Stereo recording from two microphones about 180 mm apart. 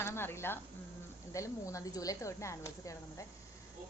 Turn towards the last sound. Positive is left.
turn(degrees=15)  # may be behind; listen again after turning